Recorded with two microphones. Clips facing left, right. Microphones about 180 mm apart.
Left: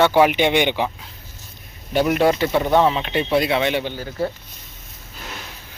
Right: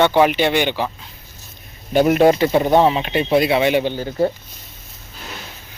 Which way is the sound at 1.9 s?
20° right (ahead or behind).